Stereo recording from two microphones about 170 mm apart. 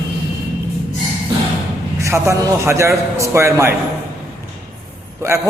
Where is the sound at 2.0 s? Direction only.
15° right (ahead or behind).